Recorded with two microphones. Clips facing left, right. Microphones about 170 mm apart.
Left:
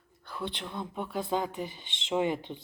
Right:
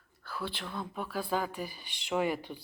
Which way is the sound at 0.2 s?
20° left (ahead or behind).